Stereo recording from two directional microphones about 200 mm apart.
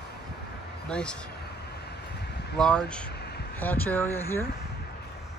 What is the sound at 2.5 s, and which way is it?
Speech, 5° left (ahead or behind).